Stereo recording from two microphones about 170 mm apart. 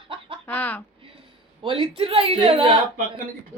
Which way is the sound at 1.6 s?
30° right (ahead or behind).